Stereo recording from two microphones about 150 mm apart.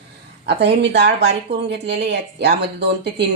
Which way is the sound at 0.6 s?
90° right.